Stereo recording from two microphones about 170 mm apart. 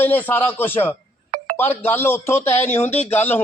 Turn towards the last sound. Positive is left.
turn(degrees=10)  # may be behind; listen again after turning